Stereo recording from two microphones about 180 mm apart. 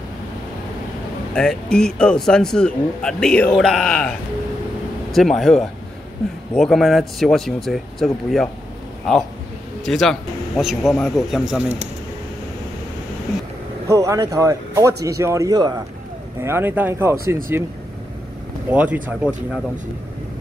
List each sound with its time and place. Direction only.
1.3 s speech: 5° left (ahead or behind)
5.1 s speech: centre (ahead or behind)
9.8 s speech: centre (ahead or behind)
13.8 s speech: 20° right (ahead or behind)
18.7 s speech: 5° right (ahead or behind)